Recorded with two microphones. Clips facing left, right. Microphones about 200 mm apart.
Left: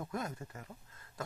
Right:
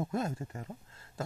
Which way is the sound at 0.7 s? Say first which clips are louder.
Right 6 dB; 30° right (ahead or behind).